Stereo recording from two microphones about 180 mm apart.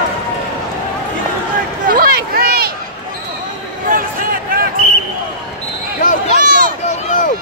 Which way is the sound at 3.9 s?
50° right (ahead or behind).